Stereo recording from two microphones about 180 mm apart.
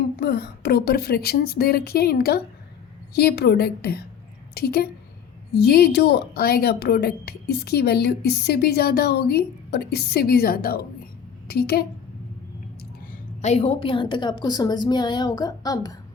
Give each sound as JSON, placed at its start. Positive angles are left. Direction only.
{"t": 0.2, "sound": "a woman's voice", "side_deg": 60}
{"t": 13.4, "sound": "a woman's voice", "side_deg": 35}